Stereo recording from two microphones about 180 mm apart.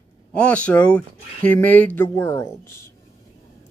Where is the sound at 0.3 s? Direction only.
5° left (ahead or behind).